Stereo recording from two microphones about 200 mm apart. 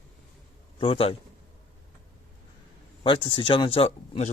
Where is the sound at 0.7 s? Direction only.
30° left (ahead or behind).